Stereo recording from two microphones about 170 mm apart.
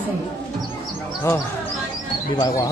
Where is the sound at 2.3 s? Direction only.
25° left (ahead or behind).